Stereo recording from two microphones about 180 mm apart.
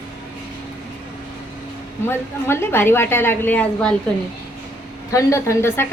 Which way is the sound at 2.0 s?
15° left (ahead or behind).